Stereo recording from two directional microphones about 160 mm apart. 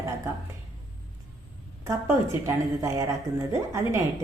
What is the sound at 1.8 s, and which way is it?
A woman's voice, 20° right (ahead or behind).